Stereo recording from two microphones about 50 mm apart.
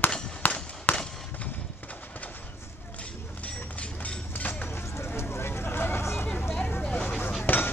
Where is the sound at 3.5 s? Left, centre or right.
Left.